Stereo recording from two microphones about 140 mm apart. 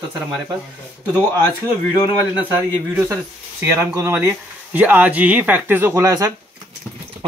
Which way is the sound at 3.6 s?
15° right (ahead or behind).